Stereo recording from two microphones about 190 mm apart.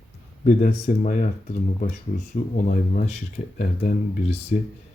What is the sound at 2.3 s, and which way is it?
Speech, 45° left (ahead or behind).